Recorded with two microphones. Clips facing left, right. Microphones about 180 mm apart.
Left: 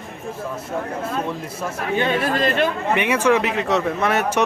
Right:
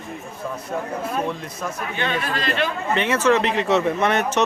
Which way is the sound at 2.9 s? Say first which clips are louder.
Even; 15° left (ahead or behind).